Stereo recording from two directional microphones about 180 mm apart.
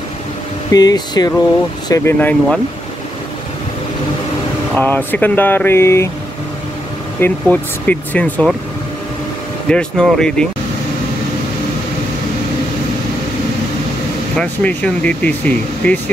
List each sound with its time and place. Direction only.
0.7 s speech: 20° left (ahead or behind)
1.9 s speech: 10° left (ahead or behind)
4.7 s speech: 10° left (ahead or behind)
7.2 s speech: 10° left (ahead or behind)
9.7 s speech: 5° left (ahead or behind)
14.3 s speech: 5° left (ahead or behind)